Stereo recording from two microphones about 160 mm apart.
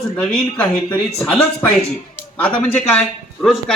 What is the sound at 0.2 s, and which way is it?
A man's voice, 5° left (ahead or behind).